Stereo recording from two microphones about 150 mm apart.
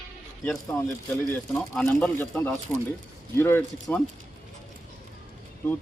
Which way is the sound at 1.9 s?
10° left (ahead or behind).